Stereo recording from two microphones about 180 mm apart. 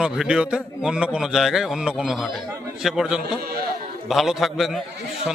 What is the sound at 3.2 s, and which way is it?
Speech, 60° right (ahead or behind).